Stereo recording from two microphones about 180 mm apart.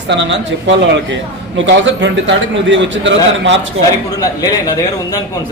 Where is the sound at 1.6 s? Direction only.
90° right.